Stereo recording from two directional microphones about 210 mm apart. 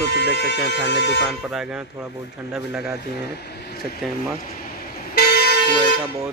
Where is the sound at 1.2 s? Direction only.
Centre (ahead or behind).